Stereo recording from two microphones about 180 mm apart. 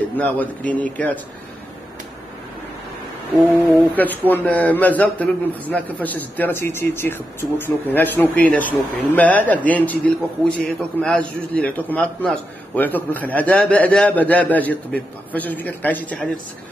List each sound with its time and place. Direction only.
0.2 s a man's voice: 10° left (ahead or behind)
3.6 s a man's voice: 10° left (ahead or behind)